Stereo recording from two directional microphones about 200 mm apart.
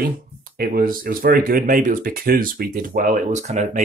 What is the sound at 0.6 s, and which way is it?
Speech, 45° right (ahead or behind).